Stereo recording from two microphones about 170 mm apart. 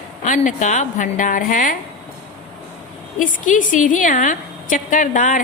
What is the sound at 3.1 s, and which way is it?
A woman's voice, 50° left (ahead or behind).